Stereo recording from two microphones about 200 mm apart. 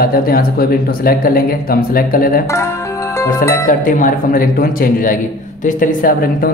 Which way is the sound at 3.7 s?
40° left (ahead or behind).